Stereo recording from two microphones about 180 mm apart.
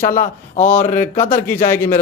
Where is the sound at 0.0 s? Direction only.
45° left (ahead or behind).